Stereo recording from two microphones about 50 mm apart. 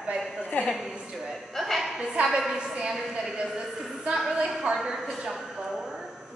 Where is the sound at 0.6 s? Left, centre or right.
Left.